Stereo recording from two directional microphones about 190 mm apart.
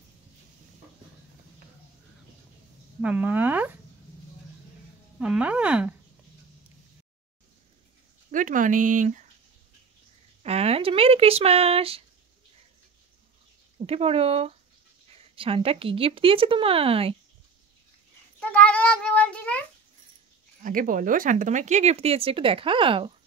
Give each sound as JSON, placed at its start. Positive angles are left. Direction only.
{"t": 3.0, "sound": "speech", "side_deg": -5}
{"t": 5.2, "sound": "a sound", "side_deg": -5}
{"t": 8.3, "sound": "speech", "side_deg": -45}
{"t": 10.4, "sound": "speech", "side_deg": -30}
{"t": 13.7, "sound": "a woman's voice", "side_deg": -30}
{"t": 18.4, "sound": "cat", "side_deg": 5}
{"t": 20.6, "sound": "speech", "side_deg": -45}